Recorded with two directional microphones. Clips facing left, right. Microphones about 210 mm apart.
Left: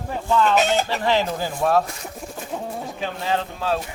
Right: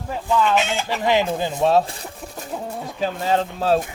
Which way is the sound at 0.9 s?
15° right (ahead or behind).